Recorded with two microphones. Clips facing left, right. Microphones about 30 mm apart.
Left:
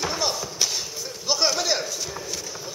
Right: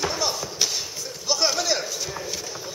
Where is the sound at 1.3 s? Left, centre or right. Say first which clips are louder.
Even; centre.